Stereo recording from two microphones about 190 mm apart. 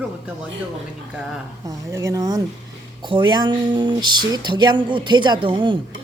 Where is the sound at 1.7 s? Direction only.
15° right (ahead or behind).